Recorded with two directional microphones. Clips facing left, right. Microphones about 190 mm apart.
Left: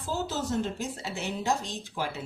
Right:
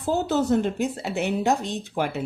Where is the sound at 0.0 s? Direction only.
60° right (ahead or behind).